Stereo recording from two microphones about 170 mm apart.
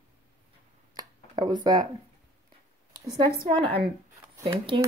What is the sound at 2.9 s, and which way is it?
Speech, 25° right (ahead or behind).